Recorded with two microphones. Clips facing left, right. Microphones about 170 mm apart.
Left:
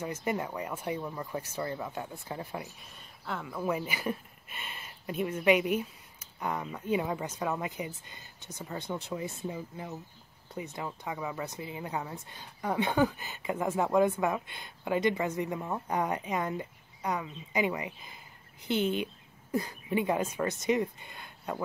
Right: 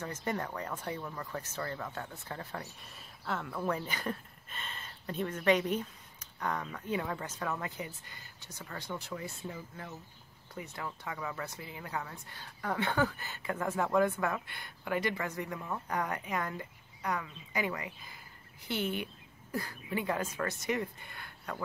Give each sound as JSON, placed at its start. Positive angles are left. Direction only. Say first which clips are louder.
{"t": 0.0, "sound": "speech", "louder": "left 3 dB", "side_deg": 10}
{"t": 2.8, "sound": "speech", "louder": "even", "side_deg": 0}